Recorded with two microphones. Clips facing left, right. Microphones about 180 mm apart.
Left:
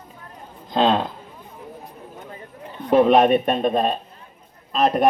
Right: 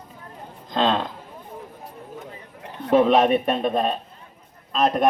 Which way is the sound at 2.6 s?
75° right (ahead or behind).